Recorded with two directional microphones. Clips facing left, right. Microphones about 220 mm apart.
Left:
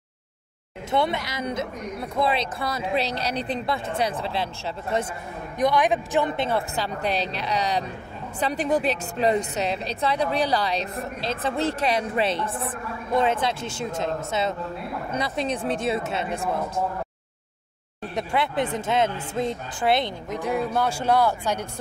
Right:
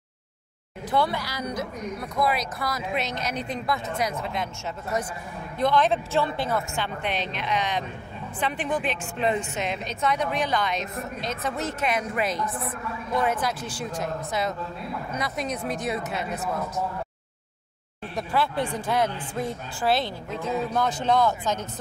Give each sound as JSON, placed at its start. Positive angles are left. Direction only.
{"t": 0.8, "sound": "a woman's voice", "side_deg": 25}
{"t": 5.6, "sound": "speech", "side_deg": 15}
{"t": 6.7, "sound": "a woman's voice", "side_deg": 35}
{"t": 18.1, "sound": "a woman's voice", "side_deg": 20}